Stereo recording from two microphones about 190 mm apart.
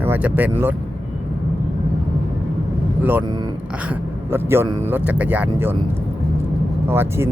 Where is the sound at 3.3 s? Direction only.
20° right (ahead or behind).